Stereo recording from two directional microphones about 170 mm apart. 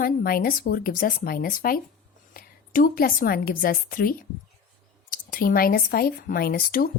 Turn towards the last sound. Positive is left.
turn(degrees=60)  # may be behind; listen again after turning